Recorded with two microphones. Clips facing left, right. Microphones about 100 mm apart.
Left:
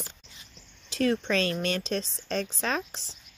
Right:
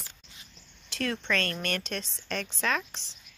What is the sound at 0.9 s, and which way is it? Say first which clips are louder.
Speech: left 6 dB; 75° right (ahead or behind).